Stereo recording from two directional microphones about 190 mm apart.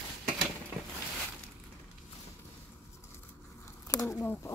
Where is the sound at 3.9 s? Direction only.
15° left (ahead or behind).